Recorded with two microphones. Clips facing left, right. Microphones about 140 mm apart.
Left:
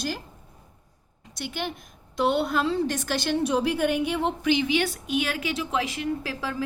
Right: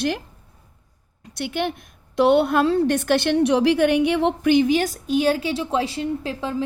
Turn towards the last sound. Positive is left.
turn(degrees=-25)  # may be behind; listen again after turning